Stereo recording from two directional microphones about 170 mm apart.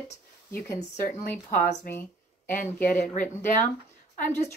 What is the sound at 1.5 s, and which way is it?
Speech, 55° left (ahead or behind).